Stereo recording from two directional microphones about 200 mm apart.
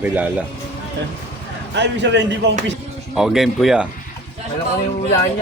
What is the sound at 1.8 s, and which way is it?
Speech, 60° right (ahead or behind).